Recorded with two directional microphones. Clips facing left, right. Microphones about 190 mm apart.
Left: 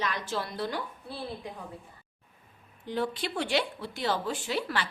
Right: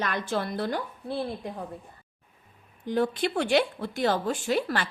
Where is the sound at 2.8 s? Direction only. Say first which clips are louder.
Right 6 dB; 50° right (ahead or behind).